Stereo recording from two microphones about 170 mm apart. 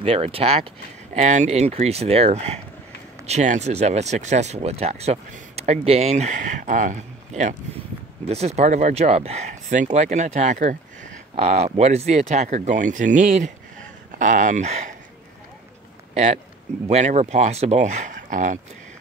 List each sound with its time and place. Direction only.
0.0 s speech: 35° right (ahead or behind)
16.8 s speech: 40° right (ahead or behind)